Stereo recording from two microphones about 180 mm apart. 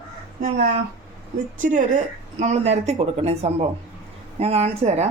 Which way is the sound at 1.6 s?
45° right (ahead or behind).